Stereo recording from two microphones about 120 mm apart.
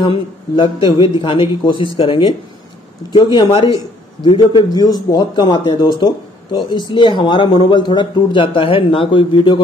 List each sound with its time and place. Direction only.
0.0 s a man's voice: 45° left (ahead or behind)